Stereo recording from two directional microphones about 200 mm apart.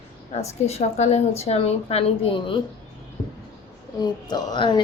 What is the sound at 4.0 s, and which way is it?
Speech, 20° left (ahead or behind).